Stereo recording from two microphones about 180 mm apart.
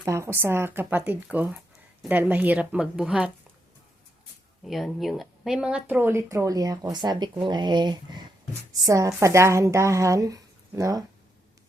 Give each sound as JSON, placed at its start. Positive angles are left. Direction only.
{"t": 0.0, "sound": "speech", "side_deg": -15}
{"t": 4.6, "sound": "speech", "side_deg": 0}